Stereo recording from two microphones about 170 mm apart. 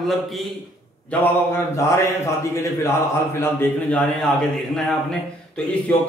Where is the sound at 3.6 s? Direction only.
5° left (ahead or behind).